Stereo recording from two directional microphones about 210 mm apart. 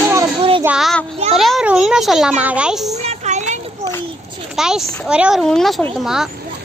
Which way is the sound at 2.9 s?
30° right (ahead or behind).